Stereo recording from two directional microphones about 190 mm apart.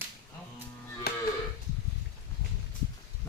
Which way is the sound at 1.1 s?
55° left (ahead or behind).